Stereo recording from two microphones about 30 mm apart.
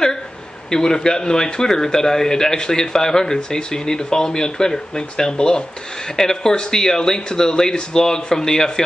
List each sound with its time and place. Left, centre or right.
0.7 s a man's voice: left